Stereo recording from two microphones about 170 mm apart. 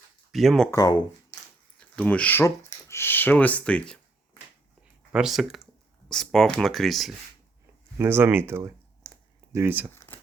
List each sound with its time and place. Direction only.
0.3 s speech: centre (ahead or behind)
0.7 s speech: 20° left (ahead or behind)
1.8 s speech: 5° left (ahead or behind)
5.1 s speech: centre (ahead or behind)
7.9 s speech: 15° right (ahead or behind)